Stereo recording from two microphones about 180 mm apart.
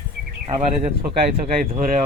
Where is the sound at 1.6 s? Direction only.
45° right (ahead or behind).